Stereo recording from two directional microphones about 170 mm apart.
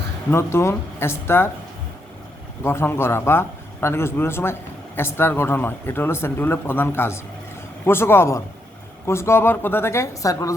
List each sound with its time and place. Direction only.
0.3 s a man's voice: 15° left (ahead or behind)
2.6 s a man's voice: 15° left (ahead or behind)